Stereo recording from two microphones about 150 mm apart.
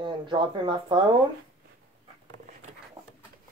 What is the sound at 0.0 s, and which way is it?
Speech, 30° right (ahead or behind).